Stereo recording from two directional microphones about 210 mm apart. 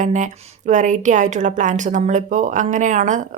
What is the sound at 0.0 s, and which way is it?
A woman's voice, 35° right (ahead or behind).